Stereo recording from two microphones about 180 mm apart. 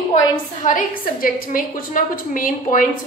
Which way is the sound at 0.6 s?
50° left (ahead or behind).